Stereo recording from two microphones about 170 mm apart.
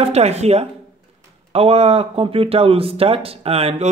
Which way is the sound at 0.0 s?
40° right (ahead or behind).